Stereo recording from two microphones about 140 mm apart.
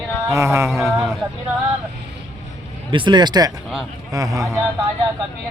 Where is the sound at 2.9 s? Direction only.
35° right (ahead or behind).